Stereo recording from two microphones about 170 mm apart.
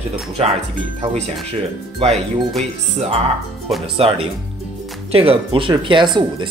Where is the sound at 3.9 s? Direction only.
35° right (ahead or behind).